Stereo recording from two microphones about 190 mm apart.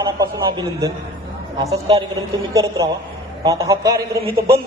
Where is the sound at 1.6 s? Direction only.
30° right (ahead or behind).